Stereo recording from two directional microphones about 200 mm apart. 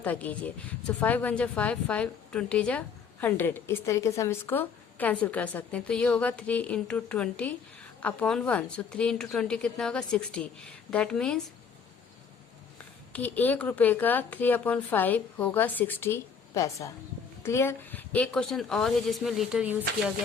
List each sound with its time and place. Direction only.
0.0 s a woman's voice: 10° left (ahead or behind)
13.1 s a woman's voice: 10° left (ahead or behind)